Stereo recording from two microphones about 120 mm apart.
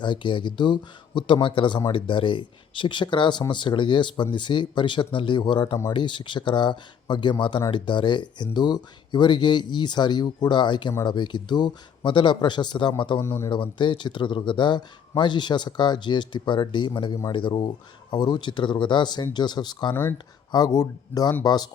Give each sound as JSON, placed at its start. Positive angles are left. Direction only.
{"t": 0.0, "sound": "speech", "side_deg": 40}
{"t": 13.1, "sound": "speech", "side_deg": 20}
{"t": 13.5, "sound": "speech", "side_deg": 40}